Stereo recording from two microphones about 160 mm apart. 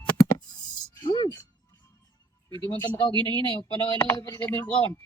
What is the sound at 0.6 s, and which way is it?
Music, 25° left (ahead or behind).